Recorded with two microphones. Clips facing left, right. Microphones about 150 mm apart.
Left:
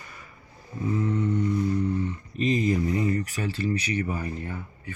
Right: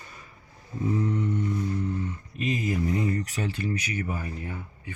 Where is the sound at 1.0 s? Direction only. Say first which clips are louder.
Left 2 dB; 10° right (ahead or behind).